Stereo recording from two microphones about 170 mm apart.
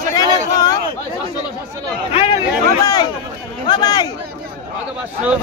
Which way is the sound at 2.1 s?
35° left (ahead or behind).